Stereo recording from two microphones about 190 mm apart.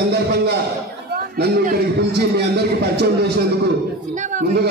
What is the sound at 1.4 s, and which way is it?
A man's voice, 60° right (ahead or behind).